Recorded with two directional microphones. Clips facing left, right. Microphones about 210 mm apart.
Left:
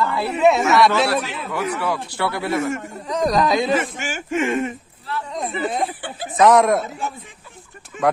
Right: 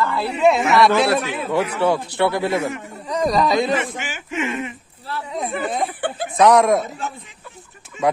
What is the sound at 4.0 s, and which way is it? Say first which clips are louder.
Speech: left 3 dB; 45° left (ahead or behind).